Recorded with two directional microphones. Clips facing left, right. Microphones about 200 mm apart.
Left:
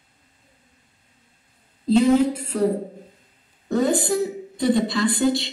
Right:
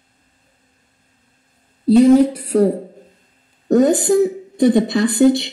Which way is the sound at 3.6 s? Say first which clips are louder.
Right 7 dB; 45° right (ahead or behind).